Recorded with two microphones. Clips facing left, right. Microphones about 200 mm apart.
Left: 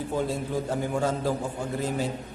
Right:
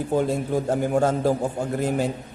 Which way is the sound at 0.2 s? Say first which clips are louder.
Right 3 dB; 50° right (ahead or behind).